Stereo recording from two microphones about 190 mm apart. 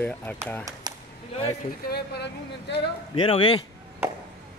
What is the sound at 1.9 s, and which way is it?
Speech, 60° left (ahead or behind).